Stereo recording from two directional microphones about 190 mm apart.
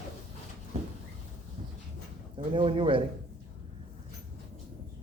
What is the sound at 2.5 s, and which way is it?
Speech, 25° right (ahead or behind).